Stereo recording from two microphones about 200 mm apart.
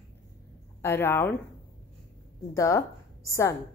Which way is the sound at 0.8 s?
10° left (ahead or behind).